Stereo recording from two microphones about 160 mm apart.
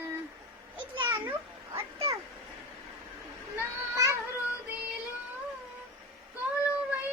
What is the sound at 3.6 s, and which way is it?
Children playing, 20° right (ahead or behind).